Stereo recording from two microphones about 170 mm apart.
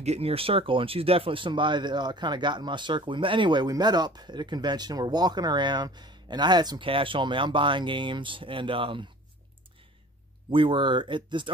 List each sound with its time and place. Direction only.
0.0 s speech: 35° right (ahead or behind)
10.5 s speech: 30° right (ahead or behind)